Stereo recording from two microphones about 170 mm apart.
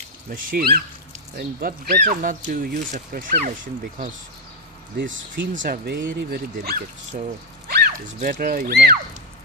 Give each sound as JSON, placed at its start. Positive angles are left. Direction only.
{"t": 0.3, "sound": "speech", "side_deg": -60}
{"t": 4.9, "sound": "speech", "side_deg": -90}
{"t": 5.8, "sound": "speech", "side_deg": -70}
{"t": 7.1, "sound": "speech", "side_deg": -50}
{"t": 7.7, "sound": "a sound", "side_deg": -55}
{"t": 8.3, "sound": "speech", "side_deg": -60}